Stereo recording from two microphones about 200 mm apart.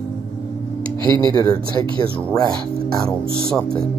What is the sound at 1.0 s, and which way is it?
Speech, 25° right (ahead or behind).